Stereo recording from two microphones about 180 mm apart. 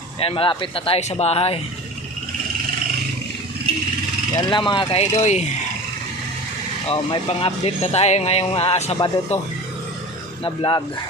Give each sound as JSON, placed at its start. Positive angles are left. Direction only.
{"t": 0.2, "sound": "speech", "side_deg": 30}
{"t": 4.4, "sound": "speech", "side_deg": 25}
{"t": 6.8, "sound": "speech", "side_deg": 30}